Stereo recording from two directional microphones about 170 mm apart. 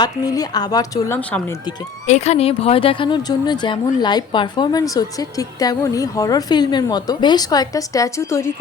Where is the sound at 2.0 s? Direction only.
40° left (ahead or behind).